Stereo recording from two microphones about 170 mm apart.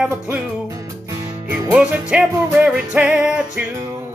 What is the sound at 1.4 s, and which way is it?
Music, 15° right (ahead or behind).